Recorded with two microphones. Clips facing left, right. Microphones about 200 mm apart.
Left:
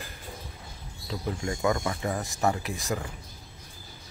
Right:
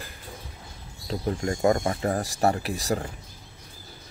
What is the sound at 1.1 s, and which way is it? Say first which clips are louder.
Speech: right 4 dB; 35° right (ahead or behind).